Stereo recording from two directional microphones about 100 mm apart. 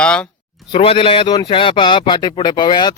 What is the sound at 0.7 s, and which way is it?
Speech, 65° left (ahead or behind).